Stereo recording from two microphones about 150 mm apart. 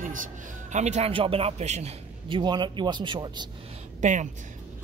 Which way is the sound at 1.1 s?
35° right (ahead or behind).